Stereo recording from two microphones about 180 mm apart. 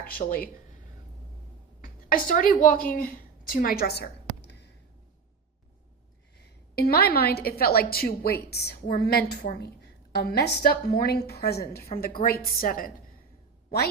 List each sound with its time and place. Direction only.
0.1 s speech: 50° left (ahead or behind)
1.8 s a woman's voice: 50° left (ahead or behind); by 4.5 s 70° left (ahead or behind)
6.7 s a woman's voice: 60° left (ahead or behind)